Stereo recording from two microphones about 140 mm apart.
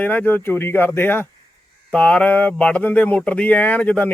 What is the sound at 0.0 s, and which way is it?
Speech, 10° left (ahead or behind).